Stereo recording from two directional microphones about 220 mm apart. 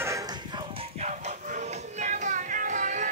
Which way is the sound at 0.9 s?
30° right (ahead or behind).